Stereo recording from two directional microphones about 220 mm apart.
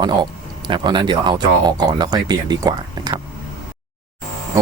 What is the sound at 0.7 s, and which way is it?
Speech, 20° right (ahead or behind).